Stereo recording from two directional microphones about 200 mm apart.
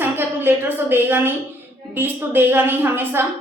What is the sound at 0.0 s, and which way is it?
A woman's voice, 10° right (ahead or behind).